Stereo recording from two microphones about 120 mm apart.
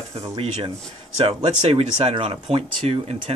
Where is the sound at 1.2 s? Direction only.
45° right (ahead or behind).